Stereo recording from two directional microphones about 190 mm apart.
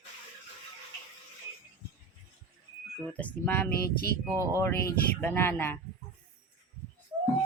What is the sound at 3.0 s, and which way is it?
Speech, 5° left (ahead or behind).